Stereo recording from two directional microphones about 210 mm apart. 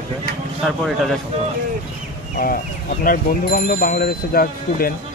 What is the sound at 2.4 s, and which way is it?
Speech, 40° left (ahead or behind).